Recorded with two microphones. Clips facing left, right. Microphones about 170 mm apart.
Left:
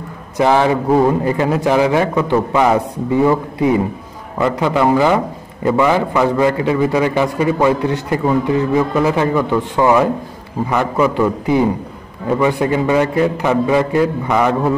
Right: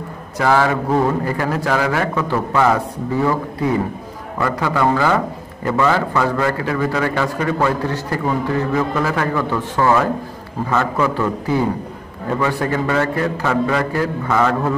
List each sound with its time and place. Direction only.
0.4 s a man's voice: 20° left (ahead or behind)